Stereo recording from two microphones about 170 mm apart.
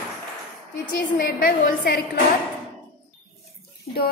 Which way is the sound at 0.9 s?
60° left (ahead or behind).